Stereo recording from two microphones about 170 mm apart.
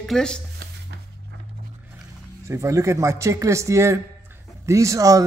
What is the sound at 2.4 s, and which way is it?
A man's voice, 15° right (ahead or behind).